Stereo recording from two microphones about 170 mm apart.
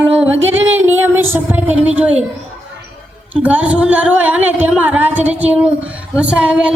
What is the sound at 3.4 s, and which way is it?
A woman's voice, 10° right (ahead or behind).